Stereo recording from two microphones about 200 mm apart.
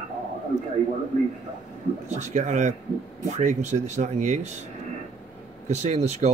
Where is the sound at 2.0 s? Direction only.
35° right (ahead or behind).